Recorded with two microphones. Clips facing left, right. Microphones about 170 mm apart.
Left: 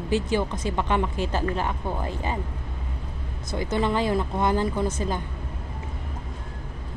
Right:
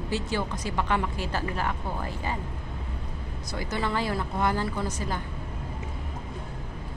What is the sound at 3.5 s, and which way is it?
A woman's voice, 20° left (ahead or behind).